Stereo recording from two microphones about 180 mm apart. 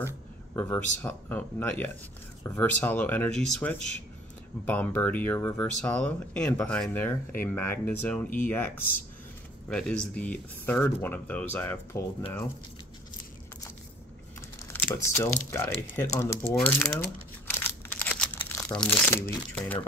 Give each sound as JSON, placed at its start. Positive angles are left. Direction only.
{"t": 0.6, "sound": "speech", "side_deg": 10}
{"t": 15.0, "sound": "speech", "side_deg": 15}
{"t": 17.5, "sound": "crumpling", "side_deg": 10}
{"t": 19.5, "sound": "speech", "side_deg": 5}